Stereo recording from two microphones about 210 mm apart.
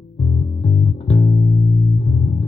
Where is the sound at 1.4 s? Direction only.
Centre (ahead or behind).